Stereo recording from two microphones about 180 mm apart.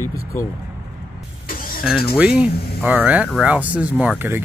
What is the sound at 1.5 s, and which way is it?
Vehicle, 50° left (ahead or behind).